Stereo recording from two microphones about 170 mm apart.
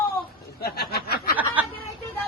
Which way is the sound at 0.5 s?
65° left (ahead or behind).